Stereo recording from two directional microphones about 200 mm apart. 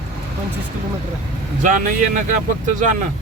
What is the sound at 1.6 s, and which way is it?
Speech, 40° right (ahead or behind).